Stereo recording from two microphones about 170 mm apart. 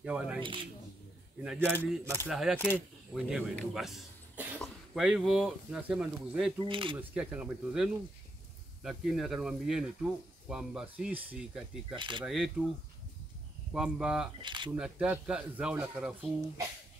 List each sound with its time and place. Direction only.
0.0 s speech: 5° right (ahead or behind)
1.4 s speech: 5° right (ahead or behind)
6.7 s speech: 30° right (ahead or behind)
7.0 s speech: 10° right (ahead or behind)
11.9 s speech: 30° right (ahead or behind)
12.3 s speech: centre (ahead or behind)
13.7 s speech: 5° right (ahead or behind)
14.4 s camera: 25° right (ahead or behind)
14.8 s speech: 5° right (ahead or behind)